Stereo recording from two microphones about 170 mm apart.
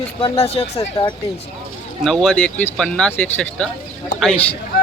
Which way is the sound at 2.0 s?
Centre (ahead or behind).